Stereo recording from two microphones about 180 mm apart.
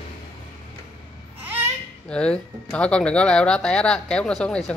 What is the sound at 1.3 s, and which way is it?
Babbling, 10° right (ahead or behind).